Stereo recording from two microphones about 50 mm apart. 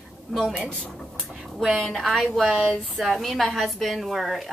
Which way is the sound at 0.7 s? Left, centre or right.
Centre.